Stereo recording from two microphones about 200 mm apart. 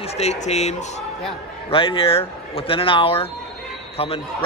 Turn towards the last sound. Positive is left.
turn(degrees=30)  # may be behind; listen again after turning